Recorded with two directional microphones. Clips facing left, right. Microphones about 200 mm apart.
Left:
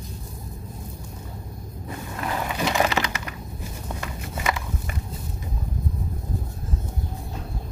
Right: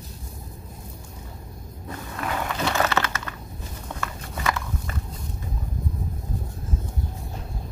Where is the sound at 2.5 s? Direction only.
15° left (ahead or behind).